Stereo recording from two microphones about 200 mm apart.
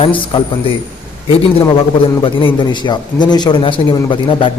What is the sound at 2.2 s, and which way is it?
A man's voice, 25° left (ahead or behind).